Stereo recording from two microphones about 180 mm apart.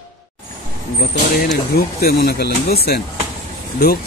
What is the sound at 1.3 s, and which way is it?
Speech, 55° left (ahead or behind).